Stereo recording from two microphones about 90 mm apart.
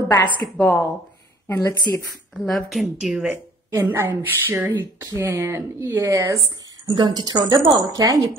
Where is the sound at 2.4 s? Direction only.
Centre (ahead or behind).